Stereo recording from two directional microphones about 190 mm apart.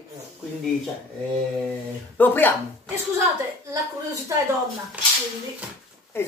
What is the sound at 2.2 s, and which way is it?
Speech, 10° left (ahead or behind).